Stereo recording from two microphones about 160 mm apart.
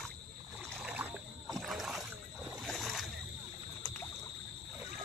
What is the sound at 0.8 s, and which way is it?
Rowboat, 10° right (ahead or behind).